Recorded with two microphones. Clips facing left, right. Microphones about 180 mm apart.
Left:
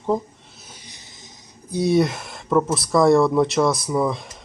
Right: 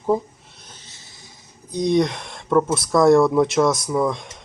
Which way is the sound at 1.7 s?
5° left (ahead or behind).